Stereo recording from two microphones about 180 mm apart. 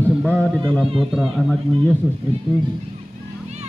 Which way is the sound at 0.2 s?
5° left (ahead or behind).